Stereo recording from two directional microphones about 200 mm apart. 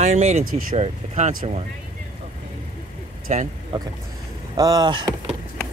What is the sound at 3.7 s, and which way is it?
Speech, 25° right (ahead or behind).